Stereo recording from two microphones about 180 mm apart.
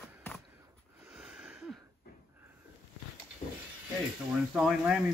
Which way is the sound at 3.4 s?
25° left (ahead or behind).